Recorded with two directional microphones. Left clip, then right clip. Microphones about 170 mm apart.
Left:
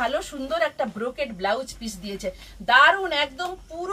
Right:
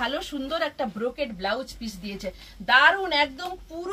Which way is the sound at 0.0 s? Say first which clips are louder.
Left 3 dB; 20° left (ahead or behind).